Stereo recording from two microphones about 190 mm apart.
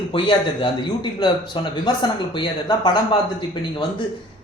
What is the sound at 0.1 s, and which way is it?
A man's voice, 25° left (ahead or behind).